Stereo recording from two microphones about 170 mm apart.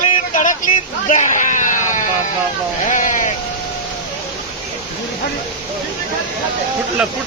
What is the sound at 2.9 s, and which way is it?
Speech, 50° left (ahead or behind).